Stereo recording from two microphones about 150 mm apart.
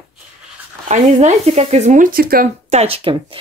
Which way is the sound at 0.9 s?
50° right (ahead or behind).